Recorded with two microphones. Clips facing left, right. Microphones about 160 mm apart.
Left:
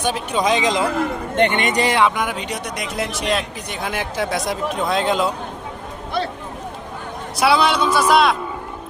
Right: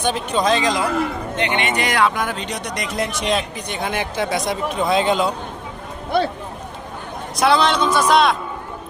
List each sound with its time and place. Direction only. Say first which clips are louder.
0.0 s speech: right 1 dB; 10° left (ahead or behind)
1.4 s speech: left 4 dB; 50° left (ahead or behind); by 2.0 s 30° left (ahead or behind)
2.0 s speech: left 1 dB; 15° left (ahead or behind)
7.3 s speech: even; 5° left (ahead or behind)